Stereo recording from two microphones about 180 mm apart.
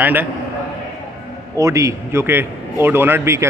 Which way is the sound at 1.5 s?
15° right (ahead or behind).